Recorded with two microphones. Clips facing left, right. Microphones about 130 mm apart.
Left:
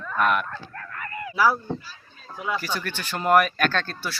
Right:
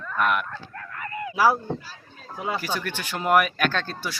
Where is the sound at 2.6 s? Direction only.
10° right (ahead or behind).